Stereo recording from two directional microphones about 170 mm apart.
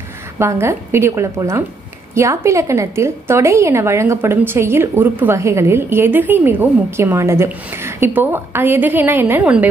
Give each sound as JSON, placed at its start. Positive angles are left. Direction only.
{"t": 0.4, "sound": "a woman's voice", "side_deg": -15}